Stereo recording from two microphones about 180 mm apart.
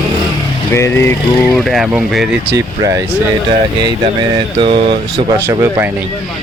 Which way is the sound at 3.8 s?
25° right (ahead or behind).